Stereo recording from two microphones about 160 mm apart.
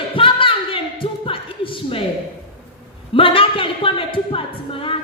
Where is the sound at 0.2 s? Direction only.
35° left (ahead or behind).